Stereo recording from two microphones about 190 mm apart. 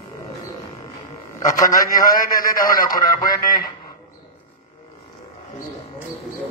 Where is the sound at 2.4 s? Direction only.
50° left (ahead or behind).